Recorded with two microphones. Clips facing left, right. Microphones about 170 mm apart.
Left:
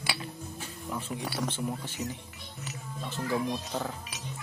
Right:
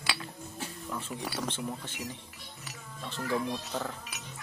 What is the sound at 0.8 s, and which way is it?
Speech, 15° left (ahead or behind).